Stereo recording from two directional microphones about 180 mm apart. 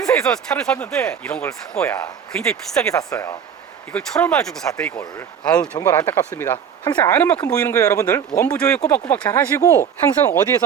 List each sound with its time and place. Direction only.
0.0 s speech: 5° left (ahead or behind)
3.1 s speech: 15° left (ahead or behind)
3.9 s speech: 5° left (ahead or behind)
4.9 s speech: 20° left (ahead or behind)
5.5 s speech: 5° left (ahead or behind)
8.5 s speech: 5° left (ahead or behind)